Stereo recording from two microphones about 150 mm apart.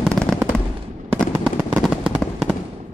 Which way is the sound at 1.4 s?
5° right (ahead or behind).